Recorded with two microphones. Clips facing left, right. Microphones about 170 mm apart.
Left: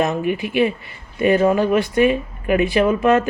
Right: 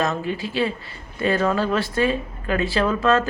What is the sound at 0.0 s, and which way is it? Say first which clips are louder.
Speech: left 4 dB; 20° left (ahead or behind).